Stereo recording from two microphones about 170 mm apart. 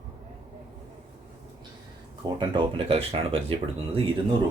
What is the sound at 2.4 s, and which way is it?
Speech, 30° right (ahead or behind).